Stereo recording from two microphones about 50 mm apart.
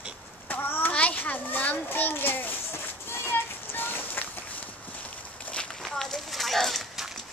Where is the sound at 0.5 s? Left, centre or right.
Left.